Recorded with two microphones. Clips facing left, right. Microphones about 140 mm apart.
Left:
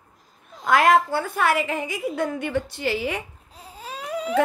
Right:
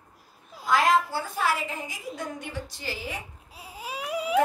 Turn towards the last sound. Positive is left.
turn(degrees=-10)  # may be behind; listen again after turning